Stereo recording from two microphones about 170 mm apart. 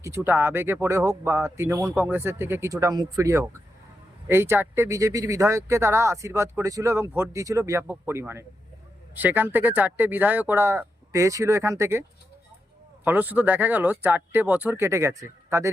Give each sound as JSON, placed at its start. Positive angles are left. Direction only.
{"t": 0.0, "sound": "speech", "side_deg": -15}
{"t": 13.1, "sound": "speech", "side_deg": -10}